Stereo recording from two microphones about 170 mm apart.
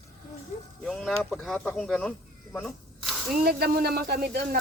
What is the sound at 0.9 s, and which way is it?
Speech, centre (ahead or behind).